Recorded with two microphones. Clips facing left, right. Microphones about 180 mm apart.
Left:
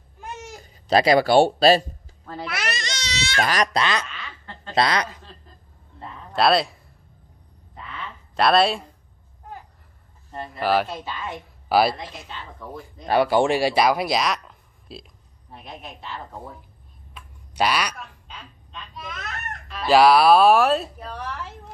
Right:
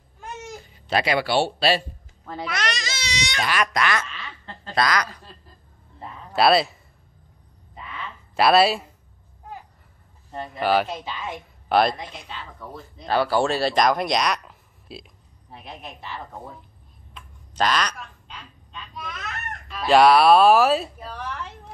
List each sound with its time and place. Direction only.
0.7 s speech: 40° left (ahead or behind)
2.4 s a woman's voice: 5° left (ahead or behind); by 3.3 s 15° right (ahead or behind)
3.4 s speech: 35° left (ahead or behind)
3.8 s speech: 20° left (ahead or behind)
5.9 s a sound: 5° right (ahead or behind)
8.4 s a woman's voice: 5° right (ahead or behind)
10.6 s a woman's voice: centre (ahead or behind)
10.9 s a woman's voice: 15° right (ahead or behind)
11.7 s a woman's voice: 5° left (ahead or behind)
13.0 s speech: 15° left (ahead or behind); by 16.2 s 5° right (ahead or behind)
17.1 s a sound: 10° left (ahead or behind)
19.7 s a woman's voice: centre (ahead or behind)